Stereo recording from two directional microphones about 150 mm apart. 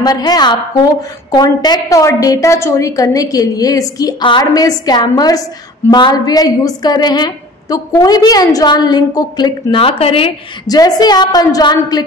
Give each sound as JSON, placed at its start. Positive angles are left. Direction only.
{"t": 0.0, "sound": "a woman's voice", "side_deg": 25}
{"t": 10.7, "sound": "a woman's voice", "side_deg": 25}